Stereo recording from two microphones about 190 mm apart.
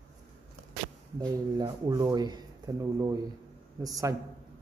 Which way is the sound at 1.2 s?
20° right (ahead or behind).